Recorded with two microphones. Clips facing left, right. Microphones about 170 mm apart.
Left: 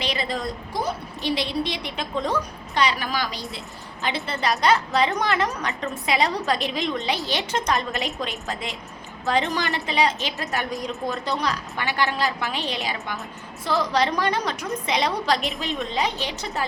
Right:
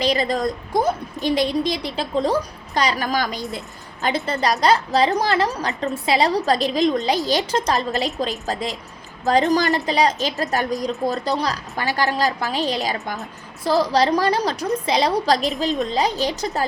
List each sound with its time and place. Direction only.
0.0 s a woman's voice: 40° right (ahead or behind)